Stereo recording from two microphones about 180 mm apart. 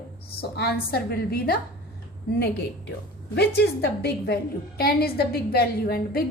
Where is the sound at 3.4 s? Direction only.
65° left (ahead or behind).